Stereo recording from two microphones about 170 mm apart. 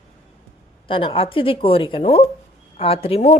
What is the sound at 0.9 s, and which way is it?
Speech, 35° left (ahead or behind).